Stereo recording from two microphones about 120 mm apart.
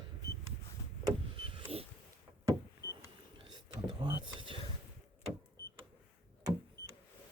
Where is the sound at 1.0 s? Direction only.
45° right (ahead or behind).